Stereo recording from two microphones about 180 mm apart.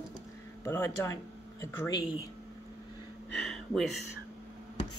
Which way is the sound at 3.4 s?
Centre (ahead or behind).